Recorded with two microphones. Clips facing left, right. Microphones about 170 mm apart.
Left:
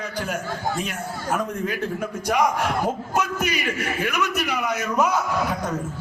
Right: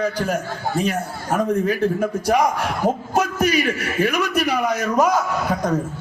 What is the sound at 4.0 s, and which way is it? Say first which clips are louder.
A man's voice: right 7 dB; 40° right (ahead or behind).